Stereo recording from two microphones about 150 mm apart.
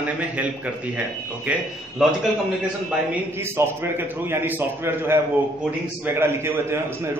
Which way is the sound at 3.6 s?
20° right (ahead or behind).